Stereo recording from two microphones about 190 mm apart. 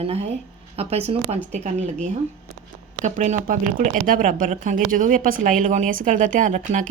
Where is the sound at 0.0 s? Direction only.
30° right (ahead or behind).